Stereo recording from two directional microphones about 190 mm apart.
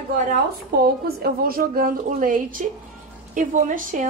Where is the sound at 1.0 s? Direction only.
55° right (ahead or behind).